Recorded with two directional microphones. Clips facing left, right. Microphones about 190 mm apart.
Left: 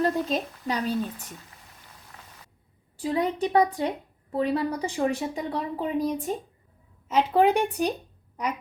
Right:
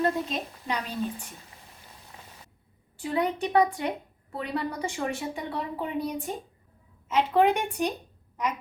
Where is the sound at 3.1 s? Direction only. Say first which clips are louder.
Left 1 dB; 35° left (ahead or behind).